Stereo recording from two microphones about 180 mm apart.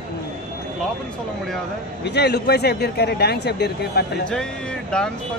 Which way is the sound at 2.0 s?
65° left (ahead or behind).